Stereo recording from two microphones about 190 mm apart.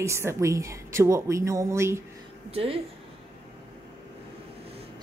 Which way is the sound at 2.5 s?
30° right (ahead or behind).